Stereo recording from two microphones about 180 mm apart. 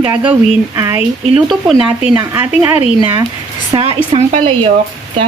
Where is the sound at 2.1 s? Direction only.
10° right (ahead or behind).